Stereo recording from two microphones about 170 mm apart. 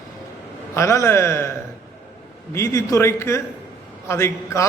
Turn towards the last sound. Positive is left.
turn(degrees=15)  # may be behind; listen again after turning